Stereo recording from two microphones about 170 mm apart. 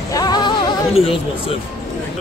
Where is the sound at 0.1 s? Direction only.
25° left (ahead or behind).